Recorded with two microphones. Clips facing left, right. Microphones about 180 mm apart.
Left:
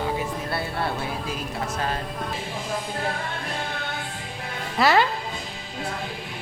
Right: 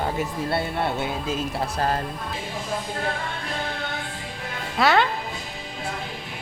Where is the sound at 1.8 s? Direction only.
40° right (ahead or behind).